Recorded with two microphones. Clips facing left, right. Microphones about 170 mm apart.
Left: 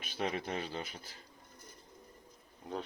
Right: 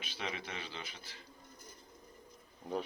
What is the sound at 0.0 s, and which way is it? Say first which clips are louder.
Speech: left 6 dB; 45° left (ahead or behind).